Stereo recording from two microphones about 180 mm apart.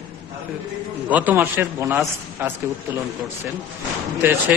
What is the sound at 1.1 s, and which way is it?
A man's voice, 10° right (ahead or behind).